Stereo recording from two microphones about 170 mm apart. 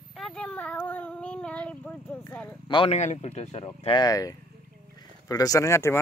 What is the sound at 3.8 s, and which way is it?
Speech, 30° left (ahead or behind).